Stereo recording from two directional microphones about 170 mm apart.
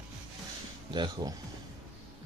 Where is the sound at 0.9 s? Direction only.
25° right (ahead or behind).